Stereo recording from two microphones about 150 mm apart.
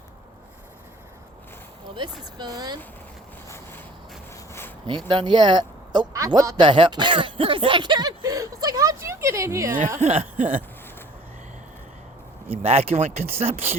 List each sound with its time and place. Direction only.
2.4 s speech: 30° right (ahead or behind)
4.9 s speech: 35° right (ahead or behind)
10.0 s speech: 45° right (ahead or behind)
10.3 s a sound: 60° right (ahead or behind)
12.5 s speech: 45° right (ahead or behind)